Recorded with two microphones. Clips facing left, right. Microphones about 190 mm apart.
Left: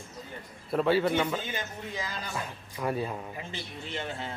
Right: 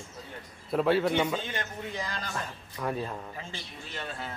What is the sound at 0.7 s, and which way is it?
A man's voice, centre (ahead or behind).